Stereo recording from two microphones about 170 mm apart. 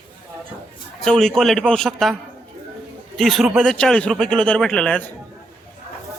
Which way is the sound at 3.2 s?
Centre (ahead or behind).